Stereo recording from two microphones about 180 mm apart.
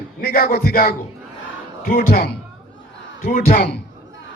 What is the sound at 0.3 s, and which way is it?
Speech, 55° left (ahead or behind).